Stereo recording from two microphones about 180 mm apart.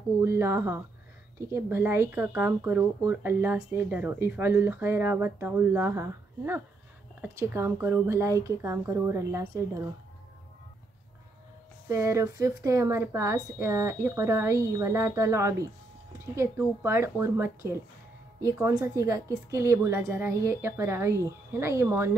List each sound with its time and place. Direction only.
0.2 s speech: 15° right (ahead or behind)
11.9 s speech: 15° right (ahead or behind)